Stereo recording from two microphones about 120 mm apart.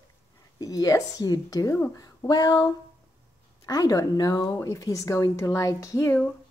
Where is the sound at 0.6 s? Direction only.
30° left (ahead or behind).